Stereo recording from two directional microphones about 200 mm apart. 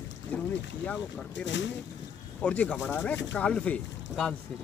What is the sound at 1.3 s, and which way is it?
Speech, 65° left (ahead or behind).